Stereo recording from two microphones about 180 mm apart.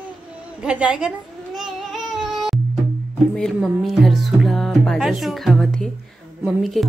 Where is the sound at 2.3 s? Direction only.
Centre (ahead or behind).